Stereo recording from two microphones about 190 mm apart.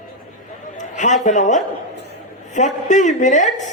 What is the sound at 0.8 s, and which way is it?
A man's voice, 40° left (ahead or behind).